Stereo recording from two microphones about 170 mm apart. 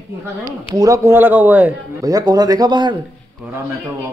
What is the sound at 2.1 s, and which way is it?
Speech, 20° right (ahead or behind).